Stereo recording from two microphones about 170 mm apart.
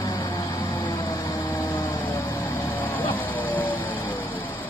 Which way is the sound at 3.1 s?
10° left (ahead or behind).